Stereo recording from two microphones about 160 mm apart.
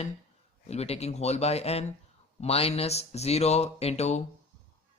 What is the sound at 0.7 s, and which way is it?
Speech, 40° left (ahead or behind).